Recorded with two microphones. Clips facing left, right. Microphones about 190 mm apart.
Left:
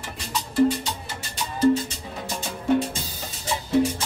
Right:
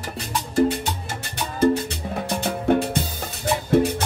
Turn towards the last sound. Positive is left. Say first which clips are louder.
# right 3 dB
turn(degrees=-60)  # may be behind; listen again after turning